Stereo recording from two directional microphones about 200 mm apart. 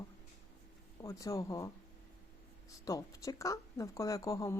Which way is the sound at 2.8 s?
15° left (ahead or behind).